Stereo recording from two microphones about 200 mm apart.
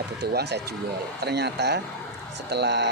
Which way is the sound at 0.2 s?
55° right (ahead or behind).